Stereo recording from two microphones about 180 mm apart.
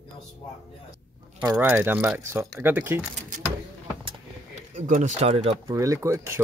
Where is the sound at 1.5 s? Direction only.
10° right (ahead or behind).